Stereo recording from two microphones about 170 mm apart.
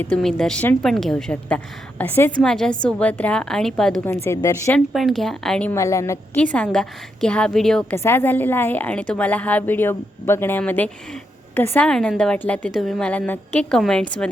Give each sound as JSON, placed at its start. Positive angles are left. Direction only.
{"t": 0.0, "sound": "a woman's voice", "side_deg": 5}
{"t": 4.4, "sound": "a woman's voice", "side_deg": 15}
{"t": 4.9, "sound": "a woman's voice", "side_deg": 0}
{"t": 5.7, "sound": "a woman's voice", "side_deg": 15}
{"t": 7.9, "sound": "a woman's voice", "side_deg": 15}